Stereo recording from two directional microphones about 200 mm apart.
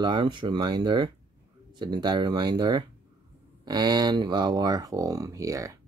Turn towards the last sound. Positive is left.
turn(degrees=-15)  # may be behind; listen again after turning